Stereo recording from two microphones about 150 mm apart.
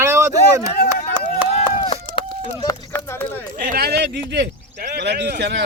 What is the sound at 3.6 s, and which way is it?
Speech, 90° right.